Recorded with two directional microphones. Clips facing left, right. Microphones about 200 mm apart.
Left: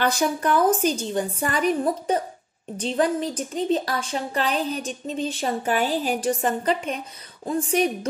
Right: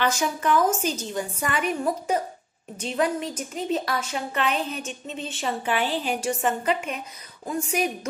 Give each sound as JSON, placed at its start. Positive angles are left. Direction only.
{"t": 0.0, "sound": "a woman's voice", "side_deg": 35}